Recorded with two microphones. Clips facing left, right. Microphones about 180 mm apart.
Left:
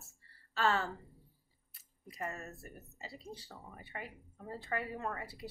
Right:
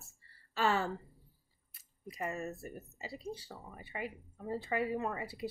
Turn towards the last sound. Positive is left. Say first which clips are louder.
# right 4 dB
turn(degrees=-15)  # may be behind; listen again after turning